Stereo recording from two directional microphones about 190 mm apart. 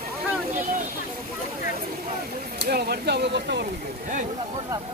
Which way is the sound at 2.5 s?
55° right (ahead or behind).